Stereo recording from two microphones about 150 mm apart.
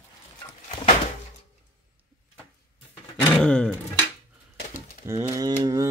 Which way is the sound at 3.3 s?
5° left (ahead or behind).